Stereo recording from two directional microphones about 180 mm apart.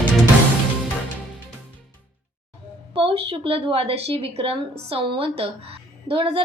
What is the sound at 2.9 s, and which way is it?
A woman's voice, 30° right (ahead or behind).